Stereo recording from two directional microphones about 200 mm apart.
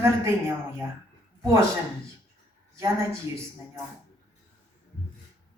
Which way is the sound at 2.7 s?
15° right (ahead or behind).